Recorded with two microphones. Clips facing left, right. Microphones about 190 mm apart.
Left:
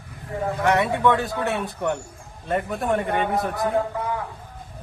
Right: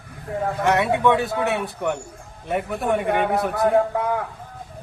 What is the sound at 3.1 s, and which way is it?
A man's voice, 65° right (ahead or behind).